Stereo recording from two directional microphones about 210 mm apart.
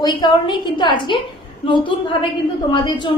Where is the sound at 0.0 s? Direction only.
20° left (ahead or behind).